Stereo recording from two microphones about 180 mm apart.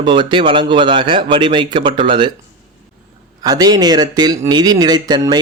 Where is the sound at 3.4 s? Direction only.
20° right (ahead or behind).